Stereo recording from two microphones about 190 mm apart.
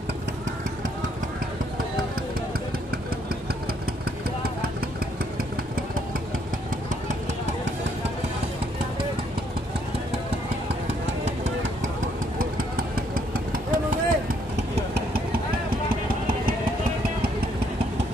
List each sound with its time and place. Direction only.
12.4 s vehicle: 50° right (ahead or behind)
14.8 s vehicle: 60° right (ahead or behind)